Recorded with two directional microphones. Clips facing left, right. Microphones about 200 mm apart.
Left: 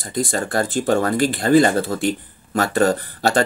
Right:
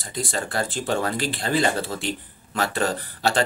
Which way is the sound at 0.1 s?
45° left (ahead or behind).